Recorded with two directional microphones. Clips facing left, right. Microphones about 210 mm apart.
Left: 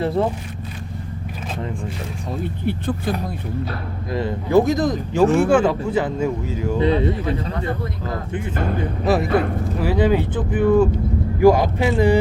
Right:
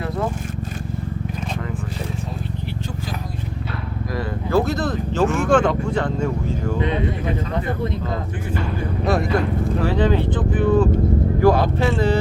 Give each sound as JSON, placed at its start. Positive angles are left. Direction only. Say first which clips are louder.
{"t": 0.0, "sound": "speech", "louder": "left 5 dB", "side_deg": 30}
{"t": 2.6, "sound": "speech", "louder": "left 7 dB", "side_deg": 55}
{"t": 4.1, "sound": "speech", "louder": "left 4 dB", "side_deg": 20}
{"t": 5.2, "sound": "speech", "louder": "left 5 dB", "side_deg": 35}
{"t": 5.5, "sound": "speech", "louder": "left 1 dB", "side_deg": 10}
{"t": 6.7, "sound": "speech", "louder": "left 7 dB", "side_deg": 35}
{"t": 9.0, "sound": "speech", "louder": "left 2 dB", "side_deg": 0}